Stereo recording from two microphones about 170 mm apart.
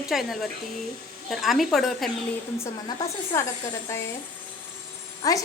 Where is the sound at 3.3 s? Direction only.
15° left (ahead or behind).